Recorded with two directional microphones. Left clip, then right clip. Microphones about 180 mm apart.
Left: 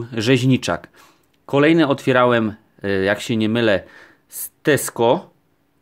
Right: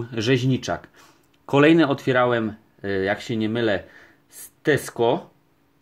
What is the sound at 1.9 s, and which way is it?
Speech, 25° left (ahead or behind).